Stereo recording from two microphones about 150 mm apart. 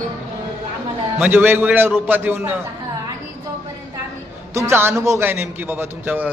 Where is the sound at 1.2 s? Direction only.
15° right (ahead or behind).